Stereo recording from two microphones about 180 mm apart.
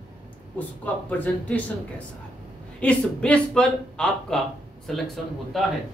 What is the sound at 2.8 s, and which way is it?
Speech, 5° left (ahead or behind).